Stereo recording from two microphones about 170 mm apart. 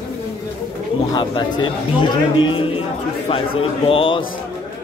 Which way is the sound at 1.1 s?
25° left (ahead or behind).